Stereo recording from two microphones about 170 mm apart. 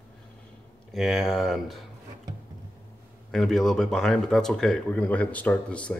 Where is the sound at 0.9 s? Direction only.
Centre (ahead or behind).